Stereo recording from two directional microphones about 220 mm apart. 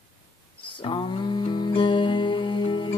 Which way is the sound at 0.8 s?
20° left (ahead or behind).